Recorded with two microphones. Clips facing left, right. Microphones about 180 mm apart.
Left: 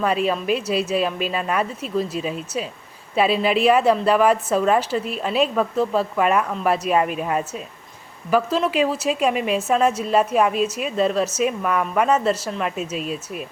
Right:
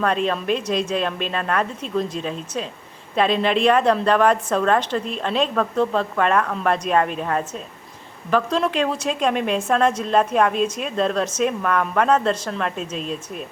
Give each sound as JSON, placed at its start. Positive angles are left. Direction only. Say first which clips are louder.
{"t": 0.0, "sound": "a woman's voice", "louder": "even", "side_deg": 5}